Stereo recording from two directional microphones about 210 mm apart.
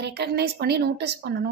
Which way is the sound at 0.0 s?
50° right (ahead or behind).